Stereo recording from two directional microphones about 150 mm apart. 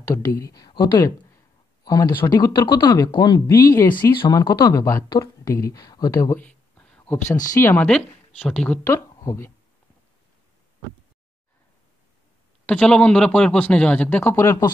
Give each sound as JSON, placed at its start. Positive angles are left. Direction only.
{"t": 0.0, "sound": "speech", "side_deg": 25}
{"t": 2.1, "sound": "speech", "side_deg": 25}
{"t": 6.3, "sound": "a sound", "side_deg": 5}
{"t": 7.2, "sound": "speech", "side_deg": 60}
{"t": 7.5, "sound": "a man's voice", "side_deg": 15}
{"t": 8.8, "sound": "speech", "side_deg": 20}
{"t": 12.6, "sound": "a man's voice", "side_deg": 5}